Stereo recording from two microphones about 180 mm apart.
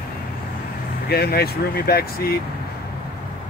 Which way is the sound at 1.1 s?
60° left (ahead or behind).